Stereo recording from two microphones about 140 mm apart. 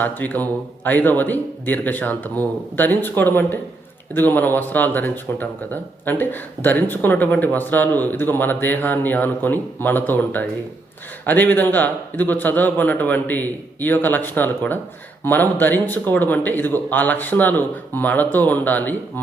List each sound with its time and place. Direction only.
0.0 s speech: 10° left (ahead or behind)